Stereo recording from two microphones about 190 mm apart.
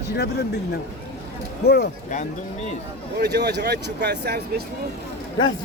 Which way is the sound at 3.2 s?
60° right (ahead or behind).